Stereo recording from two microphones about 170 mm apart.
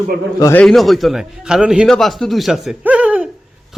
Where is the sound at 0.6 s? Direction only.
Centre (ahead or behind).